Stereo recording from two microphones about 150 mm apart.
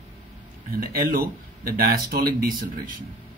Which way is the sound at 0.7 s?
80° right.